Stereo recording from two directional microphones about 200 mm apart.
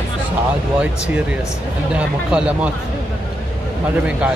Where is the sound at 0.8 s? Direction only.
5° right (ahead or behind).